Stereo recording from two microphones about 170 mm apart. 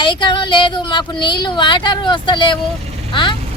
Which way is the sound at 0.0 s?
25° left (ahead or behind).